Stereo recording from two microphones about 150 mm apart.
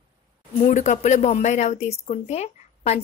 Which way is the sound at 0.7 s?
50° left (ahead or behind).